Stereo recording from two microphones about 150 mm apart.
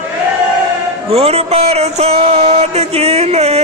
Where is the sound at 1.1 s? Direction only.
45° right (ahead or behind).